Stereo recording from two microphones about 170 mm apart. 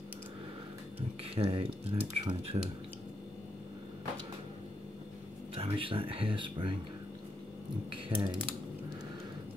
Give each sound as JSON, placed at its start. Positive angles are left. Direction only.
{"t": 1.3, "sound": "speech", "side_deg": -35}
{"t": 5.5, "sound": "speech", "side_deg": -35}
{"t": 8.1, "sound": "speech", "side_deg": -30}